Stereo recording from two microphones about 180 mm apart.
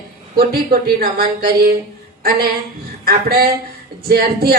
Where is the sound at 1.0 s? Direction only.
55° right (ahead or behind).